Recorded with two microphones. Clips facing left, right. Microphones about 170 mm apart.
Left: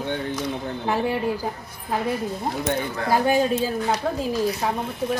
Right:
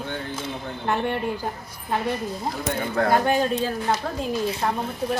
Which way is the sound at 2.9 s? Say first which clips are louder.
Right 5 dB; 55° right (ahead or behind).